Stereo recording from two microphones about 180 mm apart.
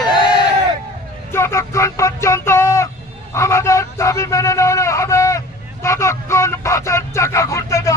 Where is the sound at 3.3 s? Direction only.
15° left (ahead or behind).